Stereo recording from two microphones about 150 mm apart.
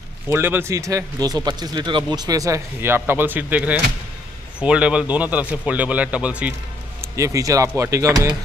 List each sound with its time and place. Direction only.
0.3 s a man's voice: 15° right (ahead or behind)
7.0 s speech: 20° right (ahead or behind)